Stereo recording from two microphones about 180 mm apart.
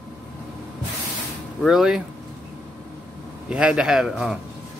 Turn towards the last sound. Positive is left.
turn(degrees=-5)  # may be behind; listen again after turning